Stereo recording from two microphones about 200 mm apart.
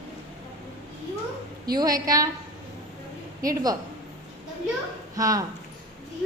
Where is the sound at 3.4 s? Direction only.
20° right (ahead or behind).